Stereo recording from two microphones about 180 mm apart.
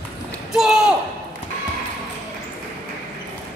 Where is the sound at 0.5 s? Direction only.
5° right (ahead or behind).